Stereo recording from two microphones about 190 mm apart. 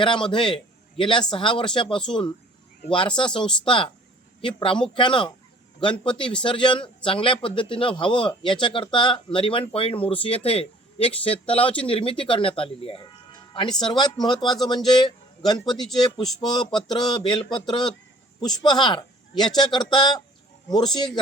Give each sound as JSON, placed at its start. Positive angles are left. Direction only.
{"t": 0.0, "sound": "a man's voice", "side_deg": 25}